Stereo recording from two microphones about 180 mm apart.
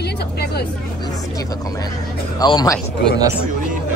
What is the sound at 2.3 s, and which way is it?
Speech, 20° left (ahead or behind).